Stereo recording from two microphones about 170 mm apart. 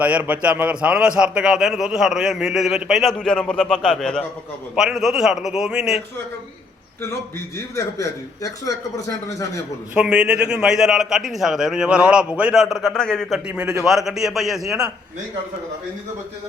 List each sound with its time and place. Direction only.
0.0 s a man's voice: 10° right (ahead or behind)
7.8 s a man's voice: 20° left (ahead or behind)
9.9 s a man's voice: 5° right (ahead or behind)
13.5 s a man's voice: 10° right (ahead or behind)